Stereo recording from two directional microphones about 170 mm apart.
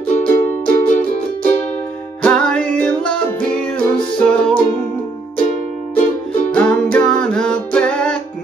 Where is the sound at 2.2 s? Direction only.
5° left (ahead or behind).